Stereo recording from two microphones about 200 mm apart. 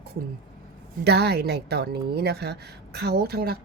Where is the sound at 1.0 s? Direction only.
55° right (ahead or behind).